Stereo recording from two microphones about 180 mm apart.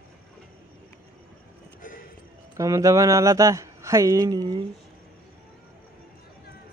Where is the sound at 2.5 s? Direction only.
20° right (ahead or behind).